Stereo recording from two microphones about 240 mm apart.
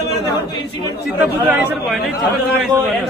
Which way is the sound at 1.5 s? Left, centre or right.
Centre.